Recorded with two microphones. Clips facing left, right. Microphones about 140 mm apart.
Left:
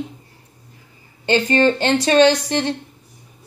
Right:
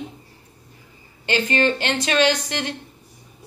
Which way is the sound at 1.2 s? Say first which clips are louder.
Left 5 dB; 30° left (ahead or behind).